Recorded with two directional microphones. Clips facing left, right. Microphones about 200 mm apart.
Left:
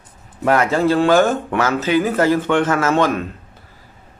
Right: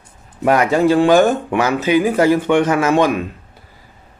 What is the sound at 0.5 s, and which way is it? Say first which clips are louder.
Speech: right 2 dB; 15° right (ahead or behind).